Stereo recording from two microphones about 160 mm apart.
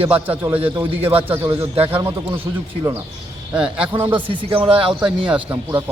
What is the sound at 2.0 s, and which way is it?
Speech, 15° right (ahead or behind).